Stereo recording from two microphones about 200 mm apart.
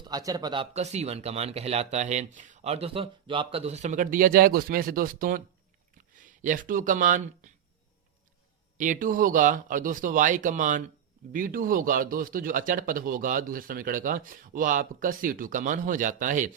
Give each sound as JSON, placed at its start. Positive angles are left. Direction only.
{"t": 0.1, "sound": "speech", "side_deg": -20}
{"t": 8.8, "sound": "speech", "side_deg": -40}